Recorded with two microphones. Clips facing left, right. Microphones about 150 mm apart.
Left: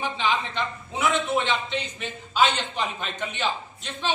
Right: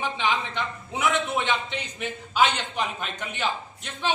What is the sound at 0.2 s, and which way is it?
A man's voice, 15° right (ahead or behind).